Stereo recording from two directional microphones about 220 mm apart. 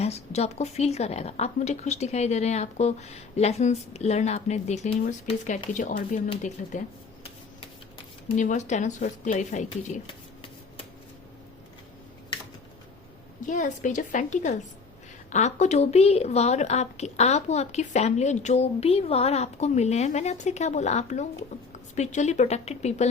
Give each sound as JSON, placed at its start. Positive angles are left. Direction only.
{"t": 0.0, "sound": "a woman's voice", "side_deg": 30}
{"t": 8.4, "sound": "a woman's voice", "side_deg": 35}
{"t": 13.4, "sound": "a woman's voice", "side_deg": 35}